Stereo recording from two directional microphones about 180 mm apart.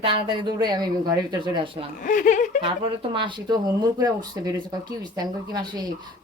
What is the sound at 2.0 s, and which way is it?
Speech, 45° left (ahead or behind).